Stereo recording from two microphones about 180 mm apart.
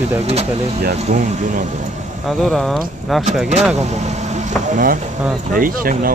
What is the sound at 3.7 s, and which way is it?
Vehicle, 40° right (ahead or behind).